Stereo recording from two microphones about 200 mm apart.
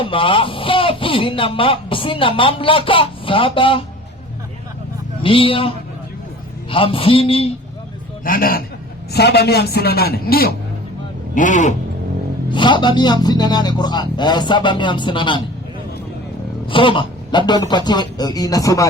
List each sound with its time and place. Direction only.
0.0 s speech: 25° left (ahead or behind)
5.2 s speech: 25° left (ahead or behind)
8.2 s a man's voice: 45° left (ahead or behind)
11.3 s speech: 40° left (ahead or behind)
12.5 s speech: 25° left (ahead or behind)
16.6 s speech: 25° left (ahead or behind)